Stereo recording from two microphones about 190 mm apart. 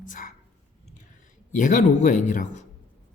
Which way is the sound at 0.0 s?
45° left (ahead or behind).